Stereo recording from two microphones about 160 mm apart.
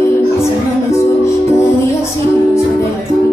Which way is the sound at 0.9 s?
15° left (ahead or behind).